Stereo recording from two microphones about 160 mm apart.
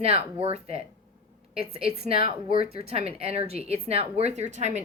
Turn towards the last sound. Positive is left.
turn(degrees=-45)  # may be behind; listen again after turning